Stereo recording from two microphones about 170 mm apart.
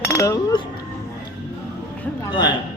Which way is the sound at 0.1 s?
20° left (ahead or behind).